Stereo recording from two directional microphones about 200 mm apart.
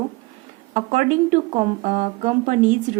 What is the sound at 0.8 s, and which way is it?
Speech, 40° right (ahead or behind).